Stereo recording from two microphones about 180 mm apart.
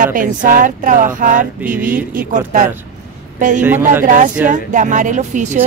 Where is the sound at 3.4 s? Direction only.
45° right (ahead or behind).